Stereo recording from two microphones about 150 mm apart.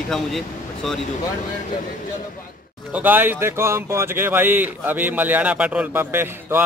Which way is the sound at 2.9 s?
10° right (ahead or behind).